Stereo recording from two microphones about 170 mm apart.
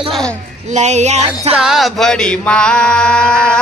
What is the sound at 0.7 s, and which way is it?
Speech, 45° right (ahead or behind).